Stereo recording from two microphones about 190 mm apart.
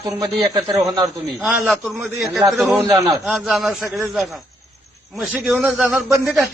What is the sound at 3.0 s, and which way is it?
A man's voice, centre (ahead or behind).